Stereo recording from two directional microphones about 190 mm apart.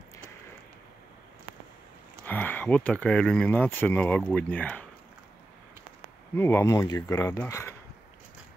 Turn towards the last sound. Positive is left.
turn(degrees=15)  # may be behind; listen again after turning